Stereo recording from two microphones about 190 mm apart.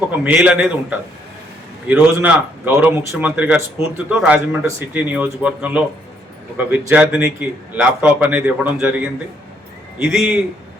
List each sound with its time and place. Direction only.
0.3 s a man's voice: 5° right (ahead or behind)
10.0 s a man's voice: 5° right (ahead or behind)